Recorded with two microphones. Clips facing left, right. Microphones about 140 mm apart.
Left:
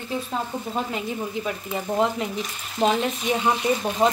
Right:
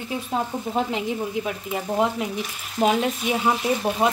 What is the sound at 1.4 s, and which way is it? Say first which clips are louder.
Frying: even; 5° right (ahead or behind).